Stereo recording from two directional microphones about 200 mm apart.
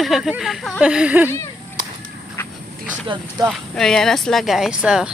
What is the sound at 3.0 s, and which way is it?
Speech, 25° right (ahead or behind).